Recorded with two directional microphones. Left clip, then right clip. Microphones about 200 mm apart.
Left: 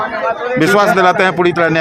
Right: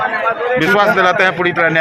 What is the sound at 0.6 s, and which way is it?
A man's voice, 55° left (ahead or behind).